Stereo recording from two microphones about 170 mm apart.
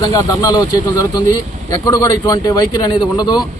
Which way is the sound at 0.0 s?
20° left (ahead or behind).